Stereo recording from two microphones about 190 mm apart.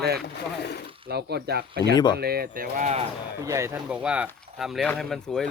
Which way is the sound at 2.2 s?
55° right (ahead or behind).